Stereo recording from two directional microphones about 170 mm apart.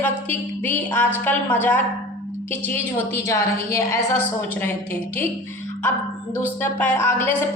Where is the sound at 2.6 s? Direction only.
15° left (ahead or behind).